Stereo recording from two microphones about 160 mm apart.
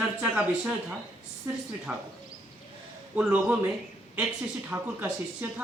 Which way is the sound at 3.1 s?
5° right (ahead or behind).